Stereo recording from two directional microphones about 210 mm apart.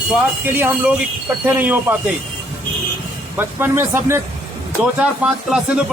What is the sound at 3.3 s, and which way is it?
A man's voice, 10° right (ahead or behind).